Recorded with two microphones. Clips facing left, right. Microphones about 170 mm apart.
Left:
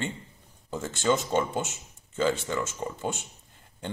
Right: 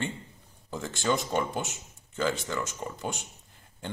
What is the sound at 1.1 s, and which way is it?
A man's voice, 20° left (ahead or behind).